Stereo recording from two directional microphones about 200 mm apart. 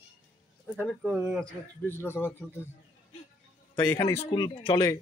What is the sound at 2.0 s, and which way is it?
Speech, 10° left (ahead or behind).